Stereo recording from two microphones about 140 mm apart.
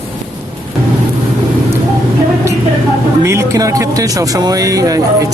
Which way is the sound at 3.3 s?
20° right (ahead or behind).